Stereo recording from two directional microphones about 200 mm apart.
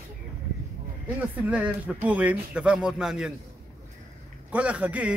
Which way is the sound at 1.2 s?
10° right (ahead or behind).